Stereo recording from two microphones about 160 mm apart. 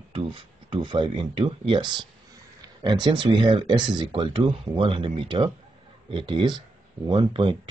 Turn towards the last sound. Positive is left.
turn(degrees=-30)  # may be behind; listen again after turning